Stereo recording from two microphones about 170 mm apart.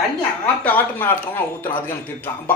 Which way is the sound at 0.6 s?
10° left (ahead or behind).